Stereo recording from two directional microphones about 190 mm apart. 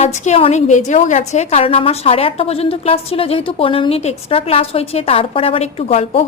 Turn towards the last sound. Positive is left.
turn(degrees=30)  # may be behind; listen again after turning